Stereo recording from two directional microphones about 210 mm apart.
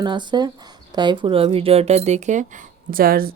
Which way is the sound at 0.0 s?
20° right (ahead or behind).